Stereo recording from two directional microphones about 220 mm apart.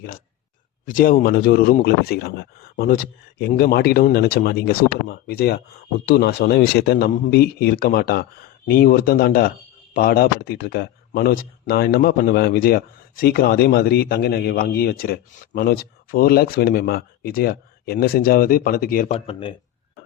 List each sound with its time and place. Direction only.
0.9 s speech: 40° left (ahead or behind)